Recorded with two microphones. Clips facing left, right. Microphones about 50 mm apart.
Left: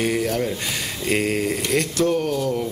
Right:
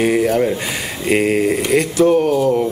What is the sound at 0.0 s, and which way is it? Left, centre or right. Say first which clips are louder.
Speech: right 7 dB; centre.